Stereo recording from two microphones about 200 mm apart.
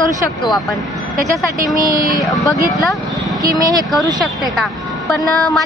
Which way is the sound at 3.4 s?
15° right (ahead or behind).